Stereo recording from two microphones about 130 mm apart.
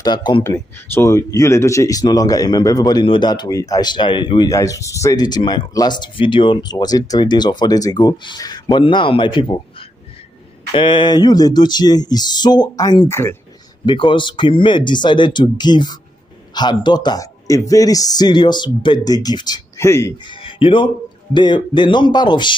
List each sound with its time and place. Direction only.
0.0 s speech: 35° left (ahead or behind)
0.4 s speech: 20° left (ahead or behind)
13.1 s speech: 20° left (ahead or behind)
13.8 s speech: 40° left (ahead or behind); by 20.2 s 25° left (ahead or behind)
20.2 s speech: 40° left (ahead or behind)